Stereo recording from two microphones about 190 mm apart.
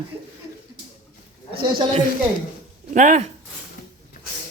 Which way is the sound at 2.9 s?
40° right (ahead or behind).